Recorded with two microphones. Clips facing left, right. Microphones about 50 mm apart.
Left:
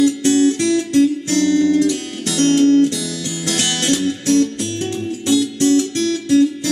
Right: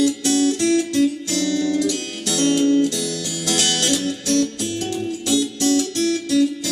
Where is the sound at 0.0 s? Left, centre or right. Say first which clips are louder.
Left 4 dB; left.